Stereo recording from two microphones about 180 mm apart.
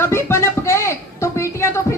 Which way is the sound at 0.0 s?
15° left (ahead or behind).